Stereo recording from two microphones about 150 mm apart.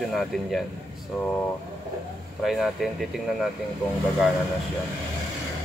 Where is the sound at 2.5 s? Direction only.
Centre (ahead or behind).